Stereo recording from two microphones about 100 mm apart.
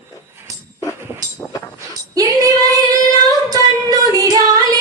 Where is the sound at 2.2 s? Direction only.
40° right (ahead or behind).